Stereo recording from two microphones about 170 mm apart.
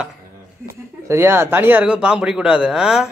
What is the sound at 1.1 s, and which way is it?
Speech, 15° right (ahead or behind).